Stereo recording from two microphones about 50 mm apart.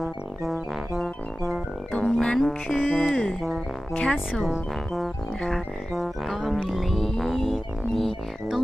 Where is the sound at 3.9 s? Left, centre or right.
Left.